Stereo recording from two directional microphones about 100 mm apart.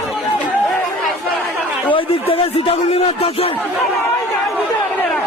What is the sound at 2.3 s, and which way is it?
Speech, 75° left (ahead or behind).